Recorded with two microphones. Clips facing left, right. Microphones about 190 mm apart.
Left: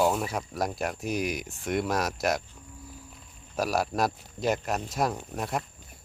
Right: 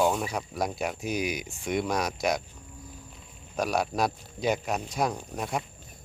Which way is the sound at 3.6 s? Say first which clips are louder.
Even; centre (ahead or behind).